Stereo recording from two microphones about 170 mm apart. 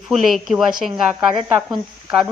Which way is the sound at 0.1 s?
Centre (ahead or behind).